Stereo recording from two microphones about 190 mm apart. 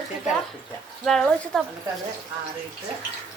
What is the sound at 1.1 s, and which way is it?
Speech, centre (ahead or behind).